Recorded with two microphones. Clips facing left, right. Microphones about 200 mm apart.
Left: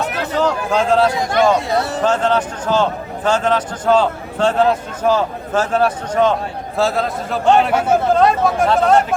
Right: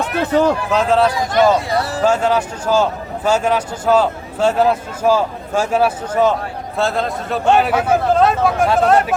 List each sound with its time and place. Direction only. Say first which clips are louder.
0.1 s speech: right 4 dB; 55° right (ahead or behind)
0.7 s a man's voice: even; centre (ahead or behind)